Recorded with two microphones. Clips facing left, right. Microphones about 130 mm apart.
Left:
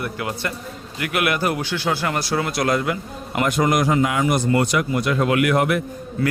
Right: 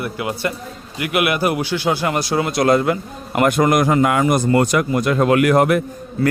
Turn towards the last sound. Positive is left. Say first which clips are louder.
# right 3 dB
turn(degrees=-40)  # may be behind; listen again after turning